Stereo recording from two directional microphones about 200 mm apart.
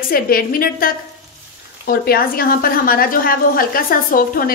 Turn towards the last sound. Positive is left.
turn(degrees=45)  # may be behind; listen again after turning